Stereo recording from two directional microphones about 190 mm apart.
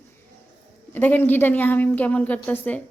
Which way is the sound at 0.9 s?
10° left (ahead or behind).